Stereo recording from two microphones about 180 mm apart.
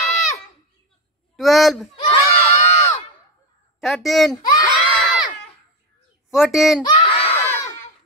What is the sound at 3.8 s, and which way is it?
Speech, centre (ahead or behind).